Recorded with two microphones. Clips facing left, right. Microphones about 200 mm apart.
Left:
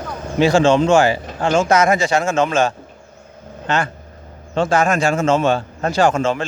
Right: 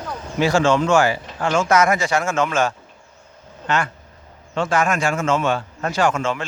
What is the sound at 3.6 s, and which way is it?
A man's voice, 30° left (ahead or behind).